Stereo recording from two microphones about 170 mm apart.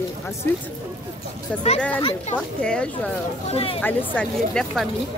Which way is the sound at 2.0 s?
35° left (ahead or behind).